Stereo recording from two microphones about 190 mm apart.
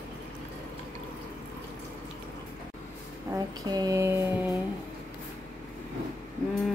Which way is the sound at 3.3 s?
20° right (ahead or behind).